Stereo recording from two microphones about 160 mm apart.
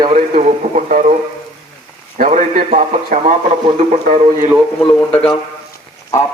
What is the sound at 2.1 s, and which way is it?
A man's voice, 50° right (ahead or behind).